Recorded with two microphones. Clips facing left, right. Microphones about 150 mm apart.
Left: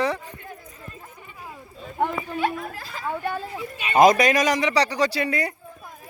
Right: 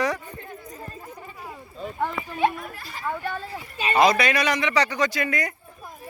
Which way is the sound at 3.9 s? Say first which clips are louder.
Left 4 dB; 45° left (ahead or behind).